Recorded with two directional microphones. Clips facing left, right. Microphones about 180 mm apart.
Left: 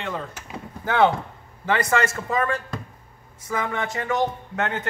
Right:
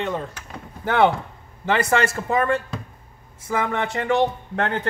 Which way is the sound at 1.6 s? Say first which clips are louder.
Right 2 dB; 25° right (ahead or behind).